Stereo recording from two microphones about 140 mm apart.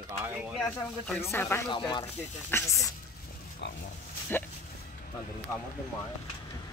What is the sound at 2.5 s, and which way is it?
Speech, 15° left (ahead or behind).